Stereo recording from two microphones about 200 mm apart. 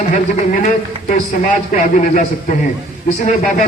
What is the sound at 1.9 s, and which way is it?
Speech, 40° left (ahead or behind).